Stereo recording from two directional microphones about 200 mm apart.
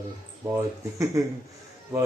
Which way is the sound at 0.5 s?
15° right (ahead or behind).